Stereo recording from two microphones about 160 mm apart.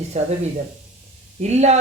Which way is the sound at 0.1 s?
40° right (ahead or behind).